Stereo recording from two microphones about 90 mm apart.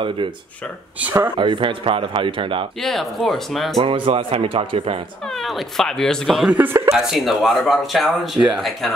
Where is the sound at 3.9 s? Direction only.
85° right.